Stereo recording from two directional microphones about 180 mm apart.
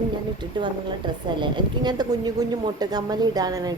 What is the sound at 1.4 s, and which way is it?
A woman's voice, 25° right (ahead or behind).